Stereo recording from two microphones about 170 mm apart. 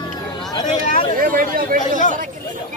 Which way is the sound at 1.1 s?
55° right (ahead or behind).